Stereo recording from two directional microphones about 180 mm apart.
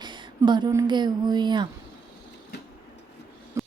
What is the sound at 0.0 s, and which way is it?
Speech, 25° right (ahead or behind).